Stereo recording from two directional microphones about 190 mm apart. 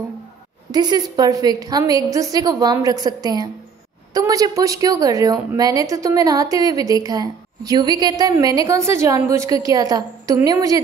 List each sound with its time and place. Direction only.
0.7 s a woman's voice: 20° right (ahead or behind)